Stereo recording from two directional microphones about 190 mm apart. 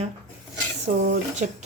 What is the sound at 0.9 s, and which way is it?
Speech, 45° right (ahead or behind).